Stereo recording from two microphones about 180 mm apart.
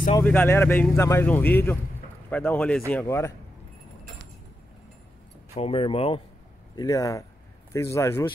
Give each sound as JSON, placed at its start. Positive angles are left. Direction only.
{"t": 0.2, "sound": "speech", "side_deg": 10}
{"t": 5.5, "sound": "speech", "side_deg": 35}
{"t": 6.7, "sound": "speech", "side_deg": 20}